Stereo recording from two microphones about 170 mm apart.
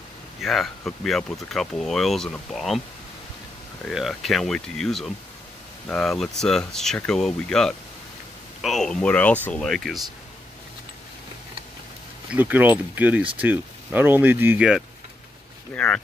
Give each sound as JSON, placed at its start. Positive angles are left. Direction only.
{"t": 0.4, "sound": "speech", "side_deg": 0}
{"t": 3.8, "sound": "speech", "side_deg": 0}
{"t": 12.3, "sound": "speech", "side_deg": -10}
{"t": 15.7, "sound": "speech", "side_deg": 5}